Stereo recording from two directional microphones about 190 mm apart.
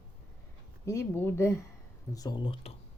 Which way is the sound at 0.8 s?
10° left (ahead or behind).